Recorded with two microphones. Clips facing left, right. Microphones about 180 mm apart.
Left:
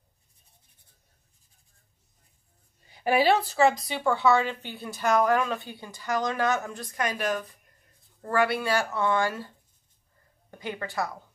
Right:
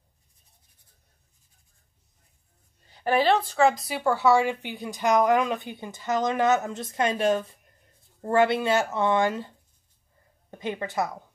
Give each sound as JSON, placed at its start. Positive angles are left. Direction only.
{"t": 2.9, "sound": "a woman's voice", "side_deg": 10}
{"t": 10.5, "sound": "a woman's voice", "side_deg": -20}